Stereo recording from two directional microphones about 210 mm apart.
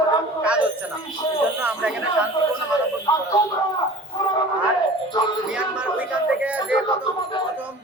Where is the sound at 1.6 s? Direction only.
5° right (ahead or behind).